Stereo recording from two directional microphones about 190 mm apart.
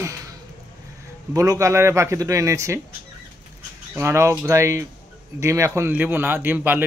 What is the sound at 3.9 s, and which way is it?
A man's voice, 15° right (ahead or behind).